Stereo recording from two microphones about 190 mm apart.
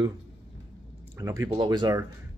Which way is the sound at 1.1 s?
20° right (ahead or behind).